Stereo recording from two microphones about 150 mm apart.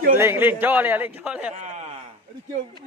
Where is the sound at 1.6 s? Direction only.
50° right (ahead or behind).